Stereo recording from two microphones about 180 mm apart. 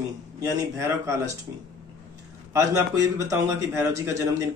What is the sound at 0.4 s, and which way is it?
Speech, 15° right (ahead or behind).